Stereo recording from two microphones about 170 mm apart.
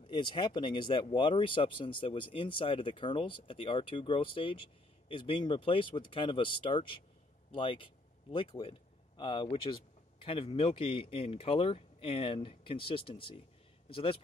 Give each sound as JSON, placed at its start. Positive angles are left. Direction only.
{"t": 0.0, "sound": "speech", "side_deg": 30}